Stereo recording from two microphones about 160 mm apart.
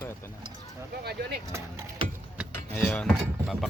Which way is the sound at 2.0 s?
35° right (ahead or behind).